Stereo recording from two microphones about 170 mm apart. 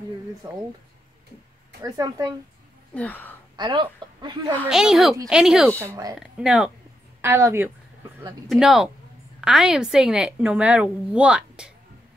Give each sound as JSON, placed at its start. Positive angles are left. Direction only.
{"t": 0.4, "sound": "speech", "side_deg": -25}
{"t": 1.8, "sound": "speech", "side_deg": -20}
{"t": 2.9, "sound": "speech", "side_deg": 10}
{"t": 3.5, "sound": "speech", "side_deg": -25}
{"t": 4.6, "sound": "a woman's voice", "side_deg": -5}
{"t": 5.8, "sound": "a woman's voice", "side_deg": -20}
{"t": 6.1, "sound": "a woman's voice", "side_deg": -5}
{"t": 8.5, "sound": "a woman's voice", "side_deg": 0}